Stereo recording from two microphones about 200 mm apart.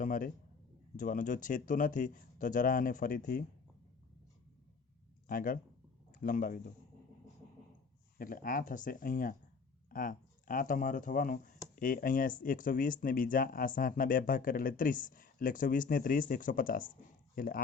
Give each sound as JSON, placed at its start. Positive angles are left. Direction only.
{"t": 0.0, "sound": "speech", "side_deg": 40}
{"t": 5.3, "sound": "speech", "side_deg": 45}
{"t": 8.2, "sound": "speech", "side_deg": 45}